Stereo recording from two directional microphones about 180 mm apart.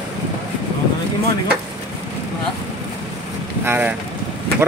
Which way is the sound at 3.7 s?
10° right (ahead or behind).